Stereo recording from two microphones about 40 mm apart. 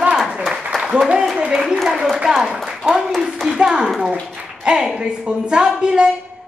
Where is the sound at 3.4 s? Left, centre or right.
Centre.